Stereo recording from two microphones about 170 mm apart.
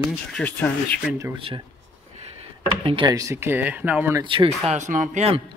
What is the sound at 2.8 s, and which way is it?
Speech, 30° right (ahead or behind).